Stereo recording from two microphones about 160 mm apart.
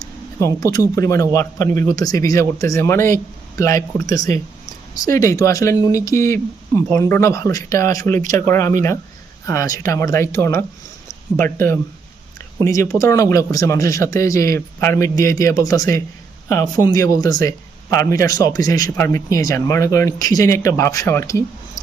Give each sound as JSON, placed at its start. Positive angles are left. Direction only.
{"t": 0.0, "sound": "a man's voice", "side_deg": 20}